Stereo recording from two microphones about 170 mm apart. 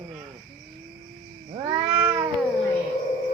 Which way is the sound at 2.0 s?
10° right (ahead or behind).